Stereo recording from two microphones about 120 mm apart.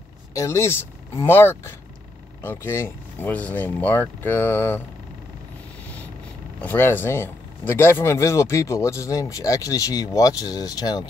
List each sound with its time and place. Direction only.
0.3 s speech: 25° left (ahead or behind)
6.6 s speech: 20° left (ahead or behind)